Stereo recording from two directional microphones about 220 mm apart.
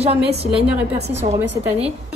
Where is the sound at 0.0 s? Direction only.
30° right (ahead or behind).